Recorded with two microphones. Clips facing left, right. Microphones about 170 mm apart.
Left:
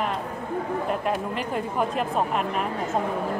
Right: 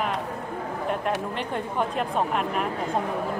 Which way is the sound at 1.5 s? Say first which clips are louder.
Left 2 dB; 5° left (ahead or behind).